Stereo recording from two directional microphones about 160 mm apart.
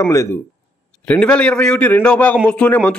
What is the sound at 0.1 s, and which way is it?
Speech, 20° left (ahead or behind).